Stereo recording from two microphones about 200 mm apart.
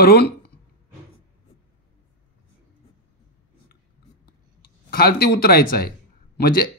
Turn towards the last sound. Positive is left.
turn(degrees=45)  # may be behind; listen again after turning